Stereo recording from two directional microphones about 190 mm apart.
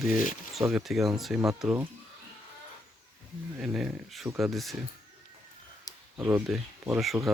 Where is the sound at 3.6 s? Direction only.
5° right (ahead or behind).